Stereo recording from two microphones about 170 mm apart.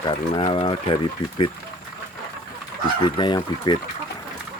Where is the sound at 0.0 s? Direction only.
30° left (ahead or behind).